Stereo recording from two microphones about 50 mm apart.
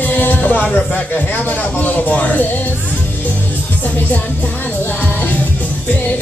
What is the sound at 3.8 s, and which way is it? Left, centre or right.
Music, left.